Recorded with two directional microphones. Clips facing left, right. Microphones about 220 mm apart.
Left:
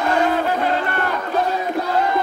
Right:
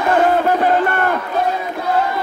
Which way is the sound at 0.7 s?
50° right (ahead or behind).